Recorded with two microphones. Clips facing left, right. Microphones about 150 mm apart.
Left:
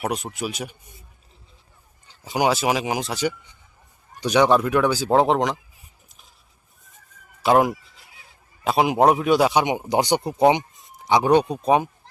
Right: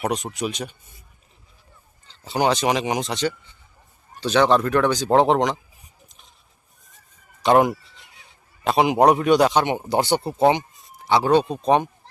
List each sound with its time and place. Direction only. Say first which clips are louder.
0.0 s speech: right 2 dB; 5° left (ahead or behind)
2.0 s speech: even; 10° left (ahead or behind)
6.1 s vehicle: right 1 dB; 5° left (ahead or behind)
7.4 s speech: right 1 dB; centre (ahead or behind)